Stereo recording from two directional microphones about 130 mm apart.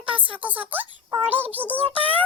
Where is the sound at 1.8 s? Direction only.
50° right (ahead or behind).